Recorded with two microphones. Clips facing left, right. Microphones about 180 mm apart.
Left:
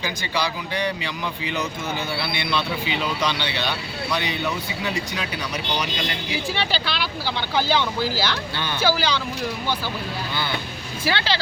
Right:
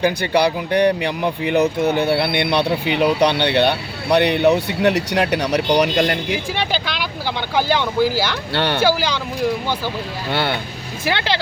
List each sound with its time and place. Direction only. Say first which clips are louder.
0.0 s speech: right 10 dB; 60° right (ahead or behind)
6.5 s speech: right 3 dB; 15° right (ahead or behind)
8.5 s speech: right 9 dB; 70° right (ahead or behind)
8.9 s speech: right 3 dB; 15° right (ahead or behind)